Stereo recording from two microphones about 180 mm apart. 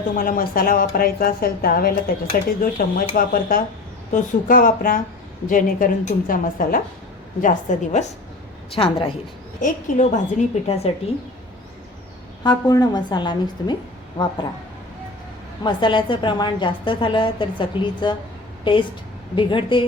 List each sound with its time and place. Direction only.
0.2 s a woman's voice: 50° left (ahead or behind)
8.7 s a woman's voice: 30° left (ahead or behind)
9.6 s a woman's voice: 45° left (ahead or behind)
12.4 s a woman's voice: 25° left (ahead or behind)
15.6 s a woman's voice: 25° left (ahead or behind)